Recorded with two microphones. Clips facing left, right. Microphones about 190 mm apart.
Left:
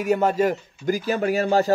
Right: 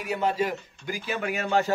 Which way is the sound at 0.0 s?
45° left (ahead or behind).